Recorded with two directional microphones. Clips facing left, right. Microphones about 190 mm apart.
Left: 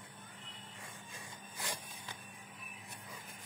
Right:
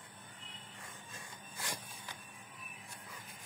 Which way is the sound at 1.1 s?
20° left (ahead or behind).